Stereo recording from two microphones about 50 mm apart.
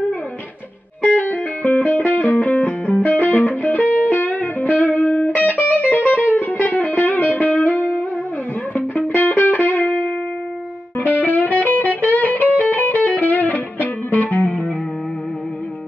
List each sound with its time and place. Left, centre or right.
1.1 s music: left
1.6 s music: centre
2.1 s music: left
9.0 s music: left
9.5 s music: left
11.1 s music: left